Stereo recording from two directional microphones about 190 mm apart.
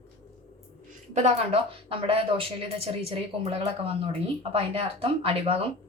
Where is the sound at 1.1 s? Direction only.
35° right (ahead or behind).